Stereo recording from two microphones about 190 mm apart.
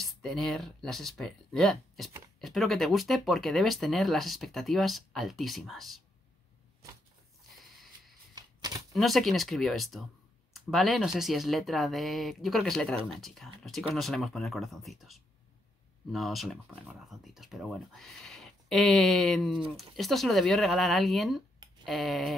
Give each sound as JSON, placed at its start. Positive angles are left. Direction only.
{"t": 0.0, "sound": "speech", "side_deg": 0}
{"t": 8.4, "sound": "a sound", "side_deg": -20}
{"t": 8.9, "sound": "speech", "side_deg": 0}